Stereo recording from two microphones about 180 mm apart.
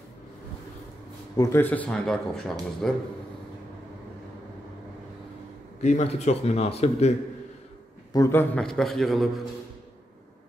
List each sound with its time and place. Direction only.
1.3 s speech: 20° left (ahead or behind)
1.6 s a man's voice: 10° left (ahead or behind)
5.8 s speech: 40° left (ahead or behind)
8.1 s a man's voice: 15° left (ahead or behind); by 9.3 s centre (ahead or behind)